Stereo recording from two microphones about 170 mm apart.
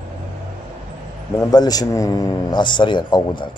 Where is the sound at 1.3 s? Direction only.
20° left (ahead or behind).